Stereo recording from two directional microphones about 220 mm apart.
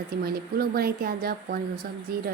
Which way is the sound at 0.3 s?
45° right (ahead or behind).